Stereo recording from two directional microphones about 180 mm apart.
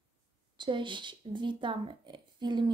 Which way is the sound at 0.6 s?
25° right (ahead or behind).